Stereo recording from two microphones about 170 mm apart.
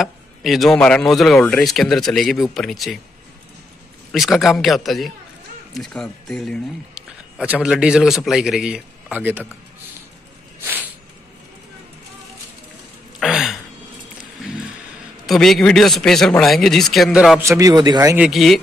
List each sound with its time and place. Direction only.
0.0 s a man's voice: centre (ahead or behind)
4.1 s a man's voice: centre (ahead or behind)
10.6 s a sound: 10° right (ahead or behind)
13.2 s a sound: centre (ahead or behind)
15.2 s a man's voice: centre (ahead or behind)
17.4 s a man's voice: 20° right (ahead or behind)
18.1 s a man's voice: 5° right (ahead or behind)